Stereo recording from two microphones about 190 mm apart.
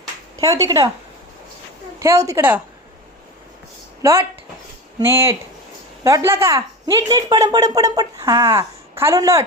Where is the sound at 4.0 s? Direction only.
15° right (ahead or behind).